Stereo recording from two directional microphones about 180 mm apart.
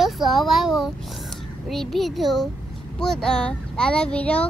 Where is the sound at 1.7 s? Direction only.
Centre (ahead or behind).